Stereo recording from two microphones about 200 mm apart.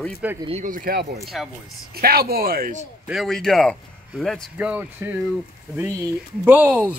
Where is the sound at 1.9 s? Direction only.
50° right (ahead or behind).